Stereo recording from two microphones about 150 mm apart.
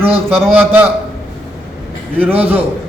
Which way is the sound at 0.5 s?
10° right (ahead or behind).